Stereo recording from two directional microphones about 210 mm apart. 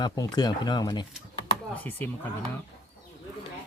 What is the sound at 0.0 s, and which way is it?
Speech, 20° left (ahead or behind).